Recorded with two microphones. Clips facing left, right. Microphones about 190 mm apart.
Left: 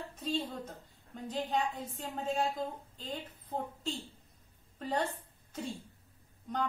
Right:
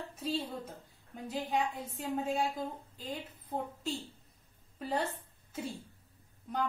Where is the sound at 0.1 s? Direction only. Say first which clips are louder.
Even; 10° right (ahead or behind).